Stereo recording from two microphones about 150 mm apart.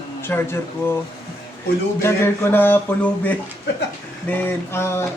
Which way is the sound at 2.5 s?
15° left (ahead or behind).